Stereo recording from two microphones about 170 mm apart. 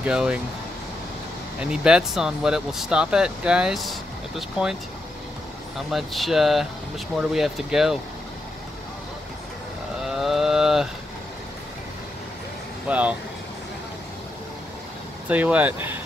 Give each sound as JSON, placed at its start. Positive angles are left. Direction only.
{"t": 0.0, "sound": "speech", "side_deg": -5}
{"t": 1.6, "sound": "speech", "side_deg": -5}
{"t": 5.9, "sound": "speech", "side_deg": 0}
{"t": 10.0, "sound": "cattle", "side_deg": 0}
{"t": 12.8, "sound": "vehicle", "side_deg": -10}
{"t": 15.2, "sound": "speech", "side_deg": -10}